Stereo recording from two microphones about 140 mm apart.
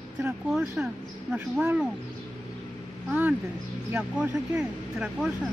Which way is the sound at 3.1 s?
10° right (ahead or behind).